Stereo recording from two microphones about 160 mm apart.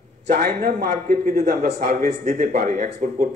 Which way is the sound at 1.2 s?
45° right (ahead or behind).